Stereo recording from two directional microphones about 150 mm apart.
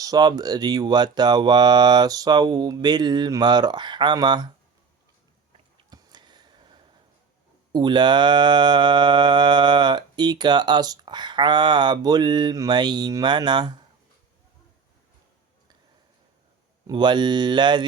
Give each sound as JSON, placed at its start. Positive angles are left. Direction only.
{"t": 0.0, "sound": "mantra", "side_deg": -25}
{"t": 5.9, "sound": "a sound", "side_deg": -30}
{"t": 7.7, "sound": "mantra", "side_deg": -30}
{"t": 16.9, "sound": "speech", "side_deg": -30}